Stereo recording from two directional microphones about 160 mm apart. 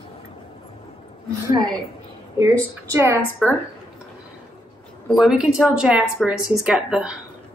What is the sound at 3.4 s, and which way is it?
Speech, centre (ahead or behind).